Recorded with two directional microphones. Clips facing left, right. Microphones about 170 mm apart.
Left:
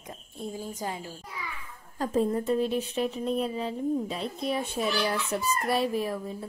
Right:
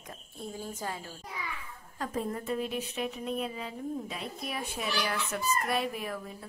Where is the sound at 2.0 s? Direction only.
30° left (ahead or behind).